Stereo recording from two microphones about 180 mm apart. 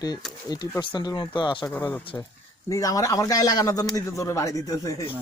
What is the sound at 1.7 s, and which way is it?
Speech, 10° left (ahead or behind).